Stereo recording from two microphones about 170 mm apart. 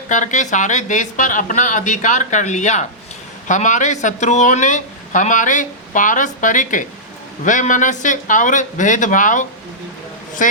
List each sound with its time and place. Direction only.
0.1 s speech: 45° left (ahead or behind)